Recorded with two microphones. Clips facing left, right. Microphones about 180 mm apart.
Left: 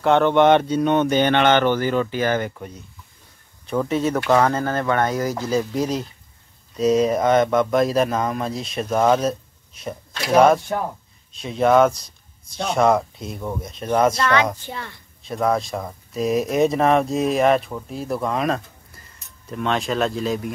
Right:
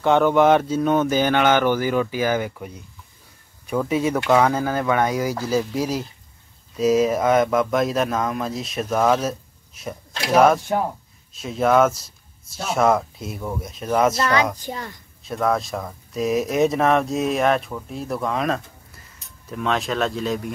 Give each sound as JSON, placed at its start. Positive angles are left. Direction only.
{"t": 0.0, "sound": "speech", "side_deg": 0}
{"t": 3.6, "sound": "speech", "side_deg": -5}
{"t": 14.6, "sound": "a child's voice", "side_deg": -40}
{"t": 15.2, "sound": "speech", "side_deg": 0}